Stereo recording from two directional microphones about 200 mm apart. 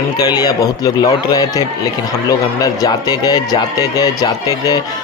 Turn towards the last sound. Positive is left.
turn(degrees=15)  # may be behind; listen again after turning